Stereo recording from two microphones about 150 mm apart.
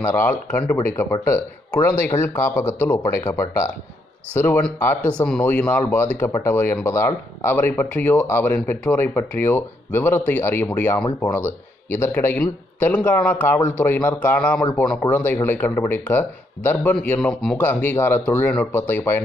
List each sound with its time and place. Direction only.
0.0 s speech: 15° left (ahead or behind)
1.8 s speech: 15° left (ahead or behind)